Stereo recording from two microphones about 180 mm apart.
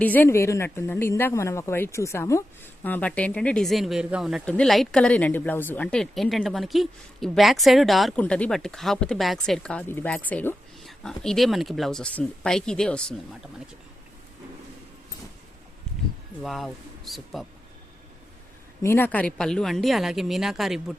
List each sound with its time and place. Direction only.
0.0 s a woman's voice: 10° left (ahead or behind)
16.4 s speech: centre (ahead or behind)
18.8 s speech: 10° left (ahead or behind)